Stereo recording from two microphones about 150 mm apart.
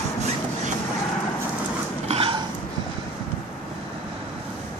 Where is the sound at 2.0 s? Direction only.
45° right (ahead or behind).